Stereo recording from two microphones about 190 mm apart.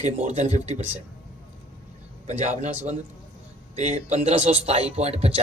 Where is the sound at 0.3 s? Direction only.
35° right (ahead or behind).